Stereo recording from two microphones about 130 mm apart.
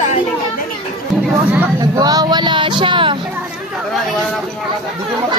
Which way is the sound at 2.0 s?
30° right (ahead or behind).